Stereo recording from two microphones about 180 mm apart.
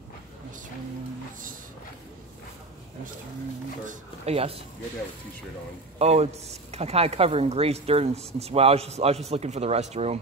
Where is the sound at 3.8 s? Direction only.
35° right (ahead or behind).